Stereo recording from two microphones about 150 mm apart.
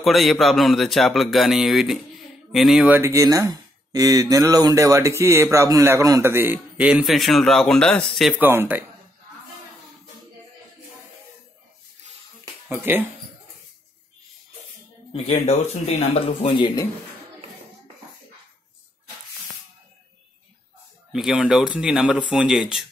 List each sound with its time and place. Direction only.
0.0 s a man's voice: centre (ahead or behind)
2.9 s speech: 20° right (ahead or behind); by 8.4 s centre (ahead or behind)
8.4 s speech: 15° right (ahead or behind)
12.6 s speech: 15° right (ahead or behind)
15.2 s speech: 45° left (ahead or behind)
21.1 s a man's voice: 5° right (ahead or behind)